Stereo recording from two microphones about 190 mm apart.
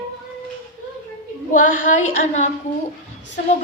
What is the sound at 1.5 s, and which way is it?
Speech, 45° left (ahead or behind).